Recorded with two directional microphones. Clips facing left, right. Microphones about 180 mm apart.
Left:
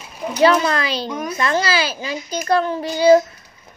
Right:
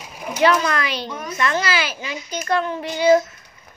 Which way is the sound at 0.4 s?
30° left (ahead or behind).